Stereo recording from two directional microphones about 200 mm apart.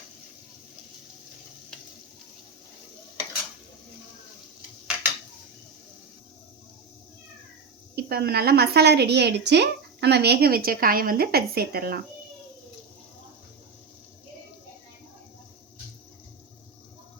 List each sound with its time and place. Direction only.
7.9 s a woman's voice: 50° right (ahead or behind)